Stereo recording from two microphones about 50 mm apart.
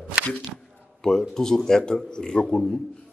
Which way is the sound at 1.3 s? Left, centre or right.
Centre.